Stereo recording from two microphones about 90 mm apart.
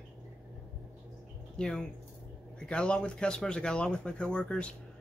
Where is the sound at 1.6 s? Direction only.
10° left (ahead or behind).